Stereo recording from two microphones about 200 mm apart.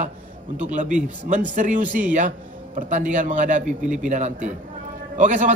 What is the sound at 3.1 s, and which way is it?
A man's voice, 40° right (ahead or behind).